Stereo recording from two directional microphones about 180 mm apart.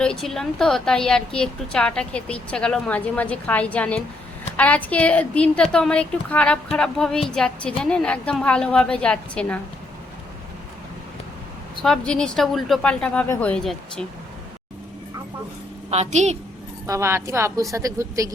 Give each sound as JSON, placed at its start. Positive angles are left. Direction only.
{"t": 0.0, "sound": "a woman's voice", "side_deg": 5}
{"t": 11.8, "sound": "a woman's voice", "side_deg": 5}
{"t": 15.9, "sound": "a woman's voice", "side_deg": -40}
{"t": 16.8, "sound": "a woman's voice", "side_deg": -15}